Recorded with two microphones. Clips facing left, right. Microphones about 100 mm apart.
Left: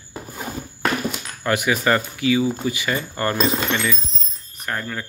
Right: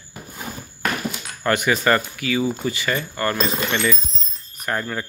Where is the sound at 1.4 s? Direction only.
5° left (ahead or behind); by 3.4 s 20° left (ahead or behind).